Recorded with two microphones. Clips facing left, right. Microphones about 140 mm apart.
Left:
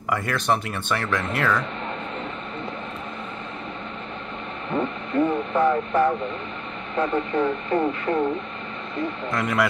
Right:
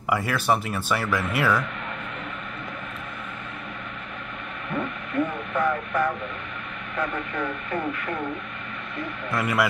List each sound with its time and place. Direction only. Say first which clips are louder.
0.1 s speech: even; 5° right (ahead or behind)
4.6 s speech: left 4 dB; 30° left (ahead or behind)
9.3 s speech: even; 5° right (ahead or behind)